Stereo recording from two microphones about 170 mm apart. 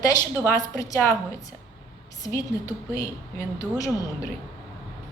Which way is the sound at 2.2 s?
20° left (ahead or behind).